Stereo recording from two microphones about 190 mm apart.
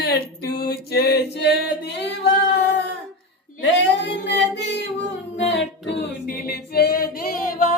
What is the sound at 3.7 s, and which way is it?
Singing, 65° left (ahead or behind).